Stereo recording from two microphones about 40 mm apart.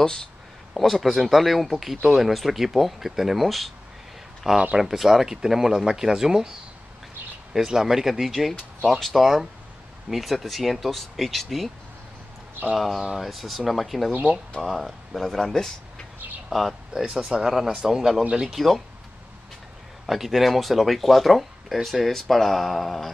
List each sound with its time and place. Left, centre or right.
0.7 s speech: centre
4.7 s speech: centre
7.5 s speech: centre
12.7 s speech: centre
16.4 s speech: centre
17.0 s speech: centre
20.1 s speech: centre